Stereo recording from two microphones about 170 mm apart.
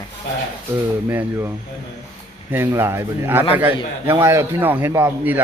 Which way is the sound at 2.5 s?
15° right (ahead or behind).